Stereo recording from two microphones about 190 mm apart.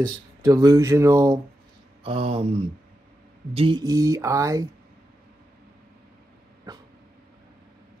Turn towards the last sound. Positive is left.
turn(degrees=-20)  # may be behind; listen again after turning